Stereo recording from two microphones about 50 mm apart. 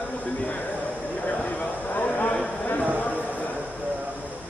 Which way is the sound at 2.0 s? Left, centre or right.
Left.